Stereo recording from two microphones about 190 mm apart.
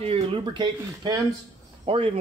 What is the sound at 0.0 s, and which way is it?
Speech, 30° right (ahead or behind).